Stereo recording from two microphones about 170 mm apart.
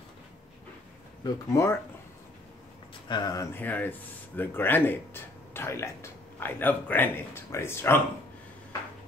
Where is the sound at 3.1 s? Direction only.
20° left (ahead or behind).